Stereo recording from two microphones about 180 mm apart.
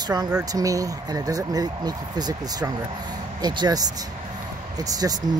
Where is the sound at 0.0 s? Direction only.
20° right (ahead or behind).